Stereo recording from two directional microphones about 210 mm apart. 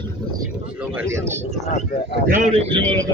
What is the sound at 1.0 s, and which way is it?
Speech, 15° right (ahead or behind).